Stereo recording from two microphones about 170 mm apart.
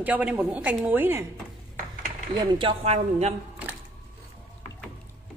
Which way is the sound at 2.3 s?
25° right (ahead or behind).